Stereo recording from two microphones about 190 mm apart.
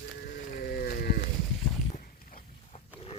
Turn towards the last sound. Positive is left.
turn(degrees=35)  # may be behind; listen again after turning